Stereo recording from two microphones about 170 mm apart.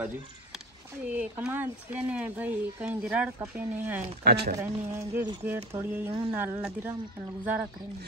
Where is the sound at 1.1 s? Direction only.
10° right (ahead or behind).